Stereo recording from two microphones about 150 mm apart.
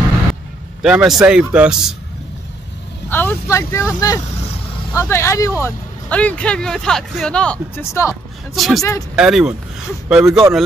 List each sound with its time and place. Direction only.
0.8 s a man's voice: 5° right (ahead or behind)
3.1 s speech: 15° left (ahead or behind)
7.7 s speech: 20° left (ahead or behind)
8.5 s a man's voice: centre (ahead or behind)